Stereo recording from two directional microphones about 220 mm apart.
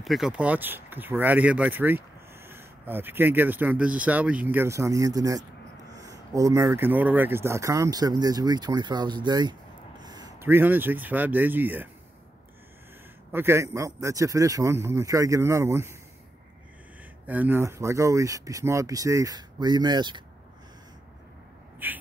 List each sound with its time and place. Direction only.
0.0 s speech: centre (ahead or behind)
13.3 s speech: 10° right (ahead or behind)
17.3 s speech: 10° right (ahead or behind)
21.8 s speech: 10° right (ahead or behind)